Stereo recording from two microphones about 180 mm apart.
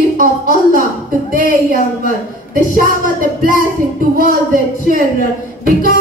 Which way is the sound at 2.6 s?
50° right (ahead or behind).